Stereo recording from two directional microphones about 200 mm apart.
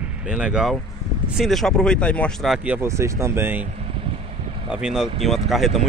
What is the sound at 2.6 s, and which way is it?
Speech, 10° right (ahead or behind).